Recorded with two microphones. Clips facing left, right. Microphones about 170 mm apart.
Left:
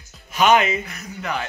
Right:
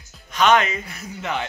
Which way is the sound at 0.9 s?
25° right (ahead or behind).